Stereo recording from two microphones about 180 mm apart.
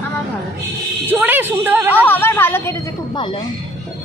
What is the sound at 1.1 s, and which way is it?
Speech, 10° right (ahead or behind).